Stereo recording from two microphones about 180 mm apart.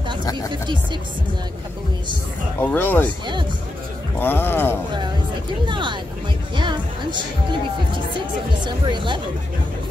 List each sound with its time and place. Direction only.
0.2 s speech: 20° left (ahead or behind)
2.6 s speech: 10° left (ahead or behind)
4.2 s speech: 10° left (ahead or behind)
5.7 s speech: 25° right (ahead or behind)
6.5 s music: 25° right (ahead or behind)
8.6 s speech: 25° right (ahead or behind)